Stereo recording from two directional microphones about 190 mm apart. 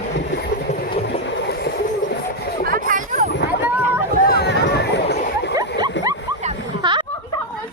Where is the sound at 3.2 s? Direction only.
65° left (ahead or behind).